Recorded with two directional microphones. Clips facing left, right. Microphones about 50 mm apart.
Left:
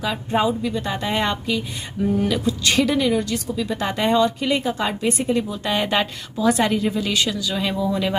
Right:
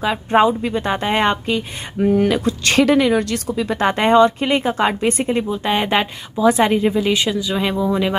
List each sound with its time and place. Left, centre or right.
0.3 s speech: right
2.0 s a woman's voice: right
5.5 s a woman's voice: right